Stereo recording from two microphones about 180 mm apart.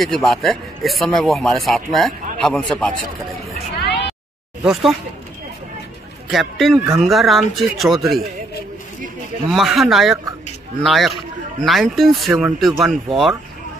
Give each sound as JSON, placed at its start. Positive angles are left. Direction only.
{"t": 0.0, "sound": "speech", "side_deg": 0}
{"t": 3.8, "sound": "a sound", "side_deg": 70}
{"t": 6.3, "sound": "speech", "side_deg": 0}
{"t": 9.5, "sound": "speech", "side_deg": 0}